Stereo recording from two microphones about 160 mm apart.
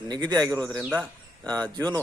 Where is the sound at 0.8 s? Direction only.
10° right (ahead or behind).